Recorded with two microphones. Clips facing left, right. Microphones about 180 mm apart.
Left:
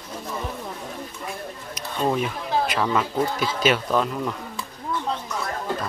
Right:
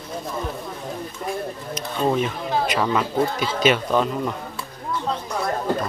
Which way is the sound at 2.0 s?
5° left (ahead or behind).